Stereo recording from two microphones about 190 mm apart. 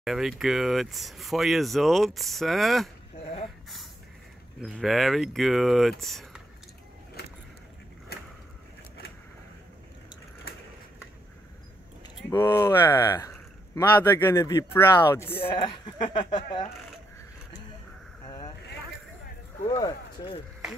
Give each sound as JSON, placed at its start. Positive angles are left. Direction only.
{"t": 0.0, "sound": "speech", "side_deg": 0}
{"t": 4.6, "sound": "speech", "side_deg": 0}
{"t": 12.3, "sound": "speech", "side_deg": 15}
{"t": 15.3, "sound": "speech", "side_deg": 25}
{"t": 18.2, "sound": "vehicle", "side_deg": 20}